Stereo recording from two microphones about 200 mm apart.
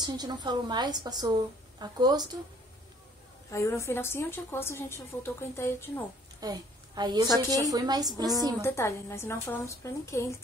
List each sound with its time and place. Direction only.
0.0 s a woman's voice: 20° right (ahead or behind)
3.4 s a woman's voice: 15° left (ahead or behind)
6.4 s a woman's voice: 20° right (ahead or behind)
8.5 s a woman's voice: 15° left (ahead or behind)